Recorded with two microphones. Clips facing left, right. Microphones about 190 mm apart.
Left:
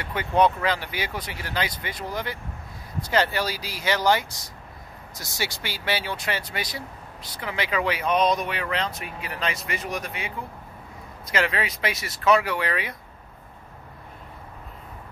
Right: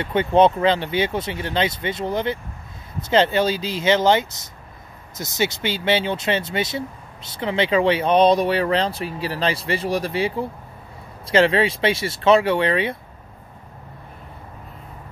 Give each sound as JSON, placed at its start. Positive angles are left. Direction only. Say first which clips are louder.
{"t": 0.0, "sound": "speech", "louder": "right 6 dB", "side_deg": -25}